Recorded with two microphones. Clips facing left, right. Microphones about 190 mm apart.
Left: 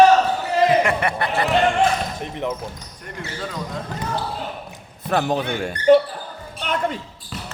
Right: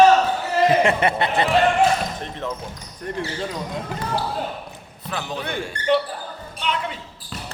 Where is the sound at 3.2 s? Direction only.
25° right (ahead or behind).